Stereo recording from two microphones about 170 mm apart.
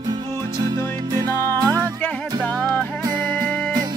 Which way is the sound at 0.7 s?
20° right (ahead or behind).